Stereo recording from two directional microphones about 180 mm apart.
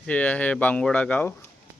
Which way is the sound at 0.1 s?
10° left (ahead or behind).